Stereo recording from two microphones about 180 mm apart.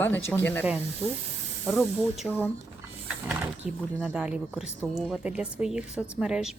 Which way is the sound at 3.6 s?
5° right (ahead or behind).